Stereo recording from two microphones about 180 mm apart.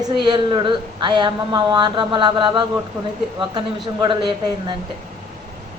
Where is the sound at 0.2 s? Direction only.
25° right (ahead or behind).